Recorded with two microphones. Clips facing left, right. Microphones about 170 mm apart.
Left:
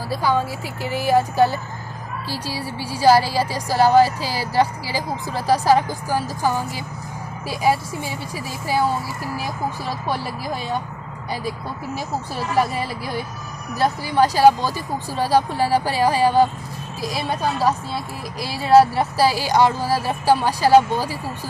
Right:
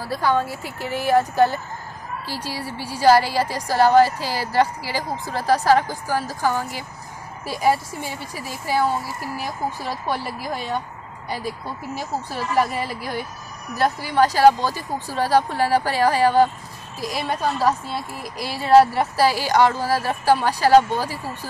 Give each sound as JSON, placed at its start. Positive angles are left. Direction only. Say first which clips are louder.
{"t": 0.1, "sound": "a woman's voice", "louder": "even", "side_deg": 5}
{"t": 2.2, "sound": "speech", "louder": "left 2 dB", "side_deg": -20}
{"t": 2.5, "sound": "a woman's voice", "louder": "left 2 dB", "side_deg": 5}
{"t": 13.7, "sound": "a woman's voice", "louder": "left 1 dB", "side_deg": 10}